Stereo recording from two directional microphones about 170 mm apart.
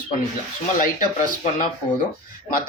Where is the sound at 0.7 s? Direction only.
55° left (ahead or behind).